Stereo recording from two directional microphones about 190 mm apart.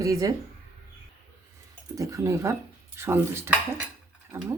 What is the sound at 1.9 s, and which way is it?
Speech, 15° right (ahead or behind).